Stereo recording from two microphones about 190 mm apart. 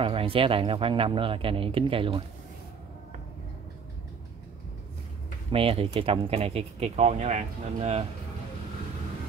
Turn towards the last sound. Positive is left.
turn(degrees=-35)  # may be behind; listen again after turning